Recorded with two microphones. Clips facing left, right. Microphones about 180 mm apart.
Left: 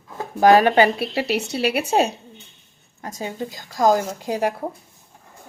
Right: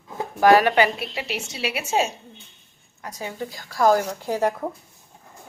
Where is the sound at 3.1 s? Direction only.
25° left (ahead or behind).